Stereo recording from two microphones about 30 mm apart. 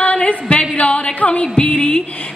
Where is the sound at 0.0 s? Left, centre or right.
Left.